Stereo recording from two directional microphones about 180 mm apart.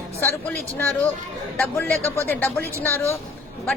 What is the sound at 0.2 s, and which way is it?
A woman's voice, 10° left (ahead or behind).